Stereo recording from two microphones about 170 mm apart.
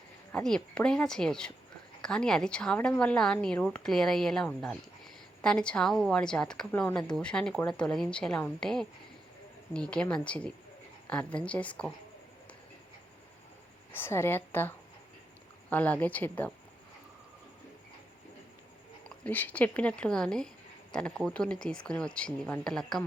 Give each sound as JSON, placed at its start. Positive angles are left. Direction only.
{"t": 0.3, "sound": "a woman's voice", "side_deg": 5}
{"t": 13.9, "sound": "speech", "side_deg": 15}
{"t": 15.7, "sound": "speech", "side_deg": 10}
{"t": 19.0, "sound": "a woman's voice", "side_deg": 10}